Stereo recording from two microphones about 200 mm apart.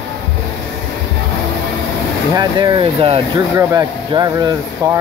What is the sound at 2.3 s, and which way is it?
Speech, 20° right (ahead or behind).